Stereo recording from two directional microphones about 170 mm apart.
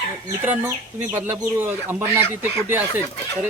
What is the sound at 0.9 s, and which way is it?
Speech, 10° right (ahead or behind).